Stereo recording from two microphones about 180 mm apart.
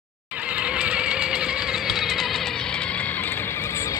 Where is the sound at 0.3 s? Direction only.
5° right (ahead or behind).